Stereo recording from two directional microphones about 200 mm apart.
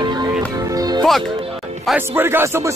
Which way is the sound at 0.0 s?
20° right (ahead or behind).